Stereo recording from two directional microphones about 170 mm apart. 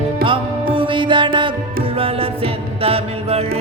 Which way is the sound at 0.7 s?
30° right (ahead or behind).